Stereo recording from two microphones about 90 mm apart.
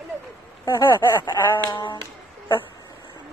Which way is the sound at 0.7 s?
30° left (ahead or behind).